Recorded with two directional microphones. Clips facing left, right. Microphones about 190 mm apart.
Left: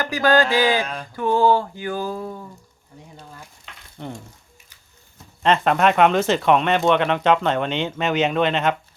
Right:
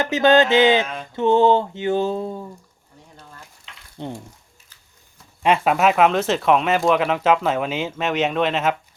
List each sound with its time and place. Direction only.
0.0 s speech: 25° right (ahead or behind)
3.9 s speech: 20° right (ahead or behind)
5.4 s speech: 10° right (ahead or behind)